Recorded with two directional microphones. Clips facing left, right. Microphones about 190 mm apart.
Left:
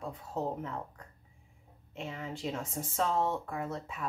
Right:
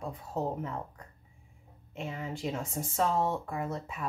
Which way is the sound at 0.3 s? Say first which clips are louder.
Right 2 dB; 10° right (ahead or behind).